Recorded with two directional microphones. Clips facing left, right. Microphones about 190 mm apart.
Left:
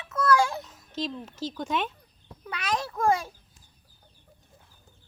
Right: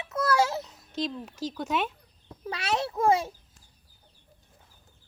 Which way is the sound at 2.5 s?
30° right (ahead or behind).